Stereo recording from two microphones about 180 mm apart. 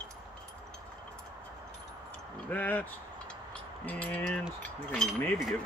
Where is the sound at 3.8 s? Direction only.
10° left (ahead or behind).